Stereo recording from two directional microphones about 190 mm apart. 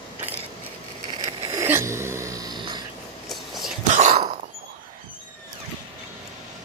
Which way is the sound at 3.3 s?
Centre (ahead or behind).